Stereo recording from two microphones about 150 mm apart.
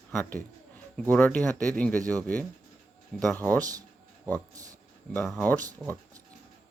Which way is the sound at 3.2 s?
10° left (ahead or behind).